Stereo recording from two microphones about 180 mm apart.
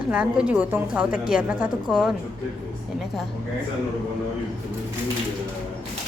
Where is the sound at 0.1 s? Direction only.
5° right (ahead or behind).